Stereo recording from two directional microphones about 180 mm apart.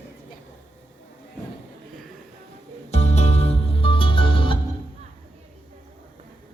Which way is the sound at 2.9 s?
40° left (ahead or behind).